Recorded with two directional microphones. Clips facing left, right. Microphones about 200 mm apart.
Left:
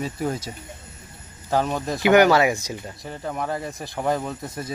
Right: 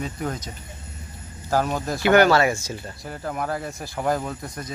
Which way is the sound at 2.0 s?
15° left (ahead or behind).